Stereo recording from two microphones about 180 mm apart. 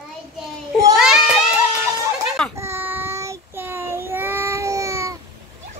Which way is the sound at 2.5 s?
15° right (ahead or behind).